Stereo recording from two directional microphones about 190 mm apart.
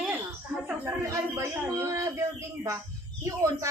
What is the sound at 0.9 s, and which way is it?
Speech, 15° right (ahead or behind).